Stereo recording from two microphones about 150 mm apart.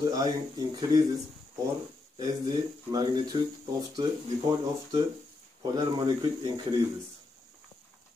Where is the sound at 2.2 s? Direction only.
25° right (ahead or behind).